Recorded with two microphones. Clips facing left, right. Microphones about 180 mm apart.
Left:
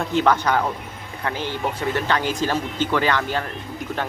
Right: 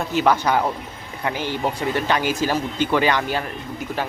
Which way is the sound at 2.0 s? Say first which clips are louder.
Right 2 dB; 10° right (ahead or behind).